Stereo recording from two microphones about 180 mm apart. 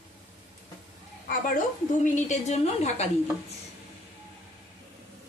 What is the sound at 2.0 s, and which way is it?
A woman's voice, 40° left (ahead or behind).